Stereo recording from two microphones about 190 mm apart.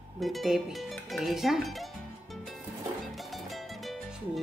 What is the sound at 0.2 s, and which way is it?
Speech, centre (ahead or behind).